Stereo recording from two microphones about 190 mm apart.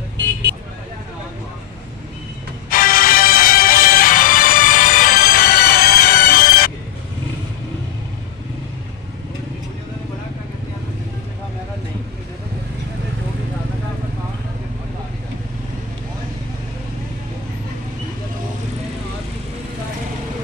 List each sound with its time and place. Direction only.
2.7 s music: 50° left (ahead or behind)